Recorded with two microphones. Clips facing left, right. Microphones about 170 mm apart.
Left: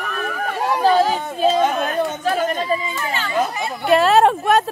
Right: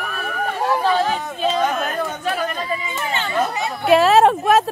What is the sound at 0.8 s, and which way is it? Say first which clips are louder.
Chatter: left 6 dB; 35° left (ahead or behind).